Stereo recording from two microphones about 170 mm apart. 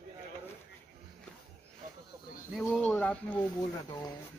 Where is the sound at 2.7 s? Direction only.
10° left (ahead or behind).